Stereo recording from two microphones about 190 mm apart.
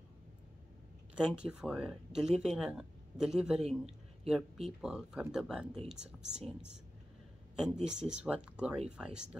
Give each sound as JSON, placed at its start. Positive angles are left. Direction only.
{"t": 1.1, "sound": "speech", "side_deg": -5}
{"t": 3.6, "sound": "a sound", "side_deg": -35}
{"t": 4.3, "sound": "speech", "side_deg": 0}
{"t": 7.8, "sound": "speech", "side_deg": -5}